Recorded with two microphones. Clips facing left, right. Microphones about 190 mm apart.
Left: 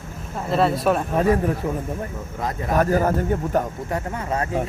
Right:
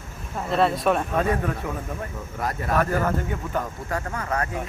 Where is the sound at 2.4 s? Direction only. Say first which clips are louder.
Left 1 dB; 20° left (ahead or behind).